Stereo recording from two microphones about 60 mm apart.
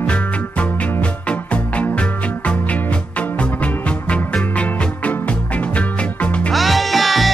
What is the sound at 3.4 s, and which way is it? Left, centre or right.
Music, left.